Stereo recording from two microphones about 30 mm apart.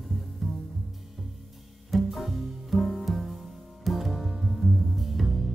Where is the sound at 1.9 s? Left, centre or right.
Centre.